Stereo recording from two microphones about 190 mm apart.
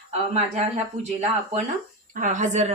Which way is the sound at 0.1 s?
35° right (ahead or behind).